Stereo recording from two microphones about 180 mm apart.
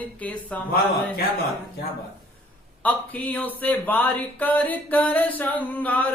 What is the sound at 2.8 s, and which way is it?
Speech, 10° left (ahead or behind).